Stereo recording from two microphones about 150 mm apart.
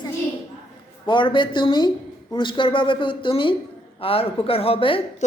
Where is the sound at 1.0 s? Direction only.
30° left (ahead or behind).